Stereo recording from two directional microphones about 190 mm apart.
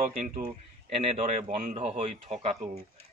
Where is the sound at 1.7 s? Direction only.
30° right (ahead or behind).